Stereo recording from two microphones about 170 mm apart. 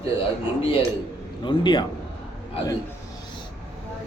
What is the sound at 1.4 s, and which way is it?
Speech, 25° left (ahead or behind).